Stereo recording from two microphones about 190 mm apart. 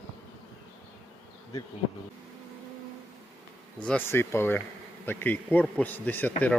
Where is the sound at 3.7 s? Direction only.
5° left (ahead or behind).